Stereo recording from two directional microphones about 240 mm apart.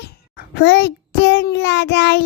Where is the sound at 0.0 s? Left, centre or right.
Left.